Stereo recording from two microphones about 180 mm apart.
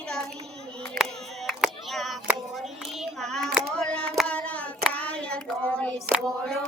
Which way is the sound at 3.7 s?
5° left (ahead or behind).